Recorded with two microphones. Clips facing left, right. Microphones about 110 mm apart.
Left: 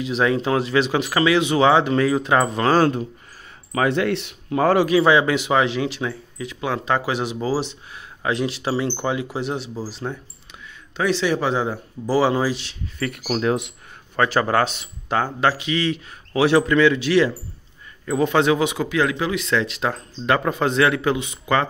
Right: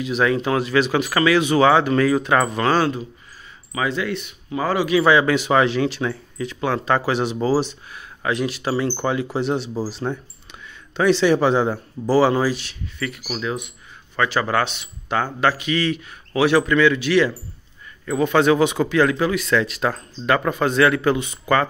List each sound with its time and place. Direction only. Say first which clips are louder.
0.0 s speech: even; 25° left (ahead or behind)
2.8 s a man's voice: left 3 dB; 50° left (ahead or behind)
4.1 s speech: left 3 dB; 75° left (ahead or behind)
4.6 s a man's voice: left 4 dB; 50° left (ahead or behind)
4.9 s speech: even; 25° left (ahead or behind)
7.6 s a man's voice: right 1 dB; 25° left (ahead or behind)
13.3 s speech: left 7 dB; 55° left (ahead or behind)
14.1 s speech: left 2 dB; 35° left (ahead or behind); by 21.6 s 20° left (ahead or behind)